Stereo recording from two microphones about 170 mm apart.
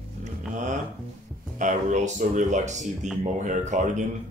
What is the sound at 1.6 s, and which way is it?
Speech, 50° right (ahead or behind).